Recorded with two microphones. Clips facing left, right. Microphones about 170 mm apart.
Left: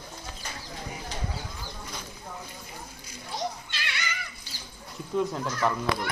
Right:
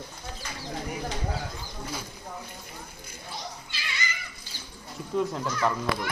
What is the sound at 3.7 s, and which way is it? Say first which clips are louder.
Giggle: even; 70° left (ahead or behind).